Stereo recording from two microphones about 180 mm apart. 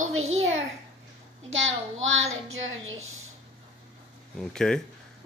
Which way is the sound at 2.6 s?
90° right.